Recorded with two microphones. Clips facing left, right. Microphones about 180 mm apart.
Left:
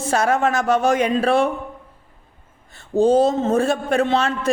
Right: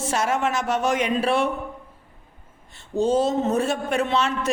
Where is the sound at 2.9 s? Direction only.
30° left (ahead or behind).